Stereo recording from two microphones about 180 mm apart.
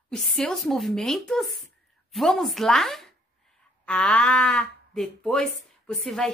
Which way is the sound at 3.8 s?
5° left (ahead or behind).